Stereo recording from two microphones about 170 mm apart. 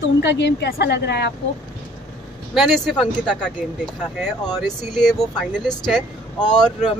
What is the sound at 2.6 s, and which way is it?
Speech, centre (ahead or behind).